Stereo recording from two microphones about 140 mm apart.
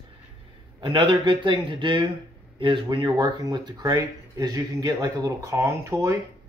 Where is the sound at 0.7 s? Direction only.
40° right (ahead or behind).